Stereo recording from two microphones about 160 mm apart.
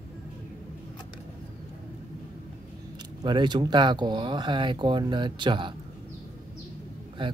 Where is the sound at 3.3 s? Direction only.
30° right (ahead or behind).